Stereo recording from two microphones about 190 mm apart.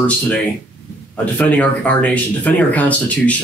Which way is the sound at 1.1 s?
10° left (ahead or behind).